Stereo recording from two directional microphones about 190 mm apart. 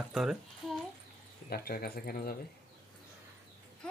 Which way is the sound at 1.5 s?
55° left (ahead or behind).